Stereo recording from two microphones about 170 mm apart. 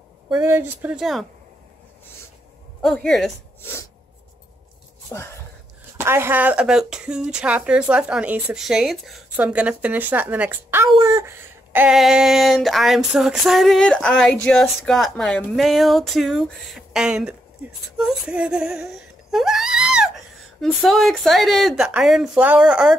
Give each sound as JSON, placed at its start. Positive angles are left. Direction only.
{"t": 0.3, "sound": "speech", "side_deg": -10}
{"t": 2.8, "sound": "speech", "side_deg": 0}
{"t": 5.1, "sound": "speech", "side_deg": 15}
{"t": 5.9, "sound": "speech", "side_deg": -15}
{"t": 17.9, "sound": "a sound", "side_deg": -5}
{"t": 20.6, "sound": "speech", "side_deg": 0}